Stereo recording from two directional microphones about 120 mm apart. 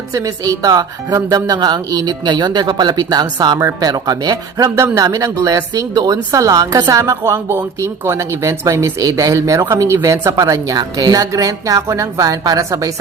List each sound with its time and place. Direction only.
0.1 s speech: 30° right (ahead or behind)